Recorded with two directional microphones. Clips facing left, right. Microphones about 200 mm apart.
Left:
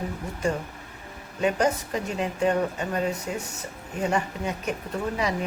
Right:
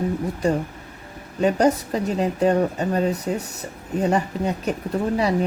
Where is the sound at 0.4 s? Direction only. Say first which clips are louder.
Right 4 dB; 35° right (ahead or behind).